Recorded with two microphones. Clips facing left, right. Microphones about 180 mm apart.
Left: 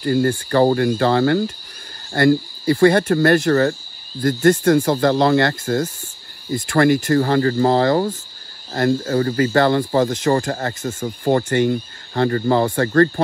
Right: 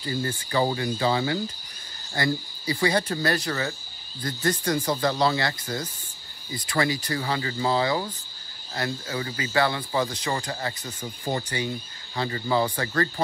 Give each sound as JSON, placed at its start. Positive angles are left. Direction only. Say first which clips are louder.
{"t": 0.0, "sound": "speech", "louder": "left 12 dB", "side_deg": 60}